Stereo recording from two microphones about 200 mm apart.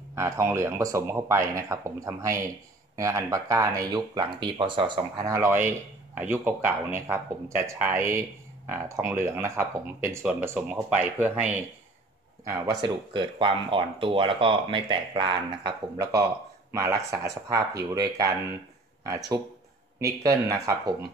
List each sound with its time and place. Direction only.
0.1 s speech: 15° right (ahead or behind)
12.4 s speech: 15° right (ahead or behind)